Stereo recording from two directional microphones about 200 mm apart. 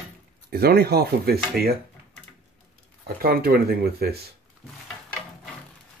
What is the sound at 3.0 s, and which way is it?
Speech, 50° right (ahead or behind).